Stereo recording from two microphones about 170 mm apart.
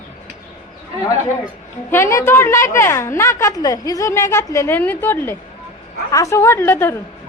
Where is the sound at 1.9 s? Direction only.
15° left (ahead or behind).